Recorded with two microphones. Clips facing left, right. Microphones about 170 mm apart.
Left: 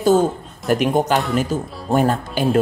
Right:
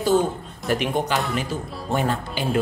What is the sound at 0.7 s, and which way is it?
Speech, 50° left (ahead or behind).